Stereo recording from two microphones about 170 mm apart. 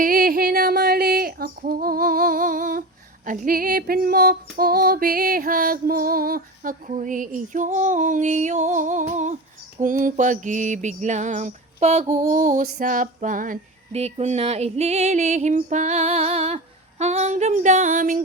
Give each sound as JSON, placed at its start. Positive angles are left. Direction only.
{"t": 0.0, "sound": "female singing", "side_deg": -55}
{"t": 12.1, "sound": "female singing", "side_deg": -50}
{"t": 13.9, "sound": "female singing", "side_deg": -40}